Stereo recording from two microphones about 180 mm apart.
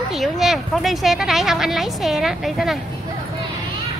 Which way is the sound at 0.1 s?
Centre (ahead or behind).